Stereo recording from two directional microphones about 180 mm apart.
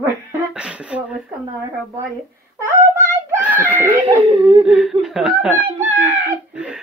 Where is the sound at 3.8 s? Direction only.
10° right (ahead or behind).